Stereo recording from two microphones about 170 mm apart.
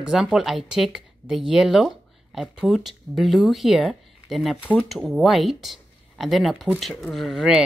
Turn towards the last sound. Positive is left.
turn(degrees=0)  # may be behind; listen again after turning